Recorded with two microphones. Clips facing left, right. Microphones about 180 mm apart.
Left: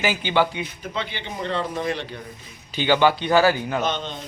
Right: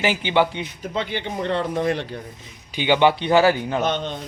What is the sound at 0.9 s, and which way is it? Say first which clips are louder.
A man's voice: right 5 dB; 50° right (ahead or behind).